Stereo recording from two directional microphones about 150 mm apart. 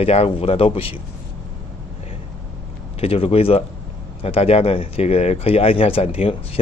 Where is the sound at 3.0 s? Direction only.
40° left (ahead or behind).